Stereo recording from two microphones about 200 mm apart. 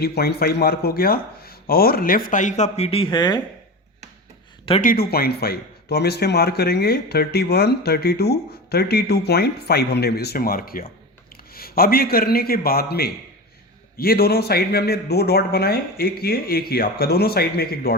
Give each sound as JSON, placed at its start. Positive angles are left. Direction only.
{"t": 0.0, "sound": "speech", "side_deg": 50}
{"t": 4.8, "sound": "speech", "side_deg": 45}